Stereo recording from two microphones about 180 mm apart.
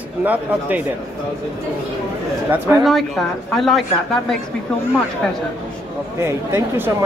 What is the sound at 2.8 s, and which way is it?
A woman's voice, centre (ahead or behind).